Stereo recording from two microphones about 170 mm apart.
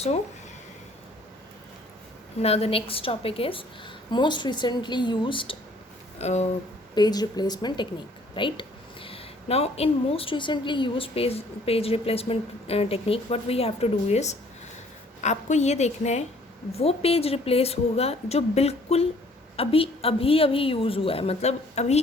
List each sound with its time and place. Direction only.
2.4 s a woman's voice: 35° left (ahead or behind)
6.1 s a woman's voice: 40° left (ahead or behind)
6.9 s a woman's voice: 25° left (ahead or behind); by 21.9 s 40° left (ahead or behind)